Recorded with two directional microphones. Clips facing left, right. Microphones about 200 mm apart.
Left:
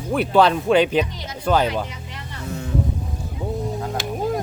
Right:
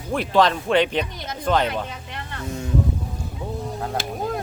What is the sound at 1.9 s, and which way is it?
Vehicle, 60° right (ahead or behind).